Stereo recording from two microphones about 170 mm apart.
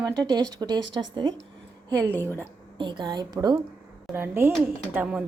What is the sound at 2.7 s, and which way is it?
Speech, 25° right (ahead or behind).